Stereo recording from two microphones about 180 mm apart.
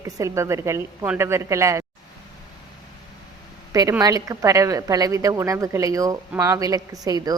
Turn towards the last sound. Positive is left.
turn(degrees=-20)  # may be behind; listen again after turning